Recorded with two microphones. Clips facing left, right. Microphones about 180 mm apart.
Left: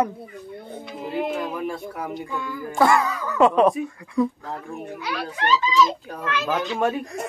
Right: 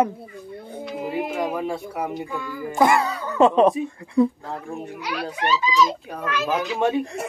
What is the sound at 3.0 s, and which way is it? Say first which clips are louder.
Speech: right 1 dB; 30° right (ahead or behind).